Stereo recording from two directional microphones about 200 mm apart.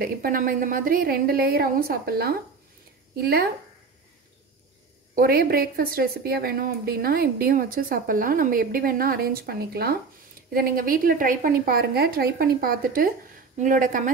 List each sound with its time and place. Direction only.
0.0 s a woman's voice: 45° right (ahead or behind)
5.1 s a woman's voice: 50° right (ahead or behind)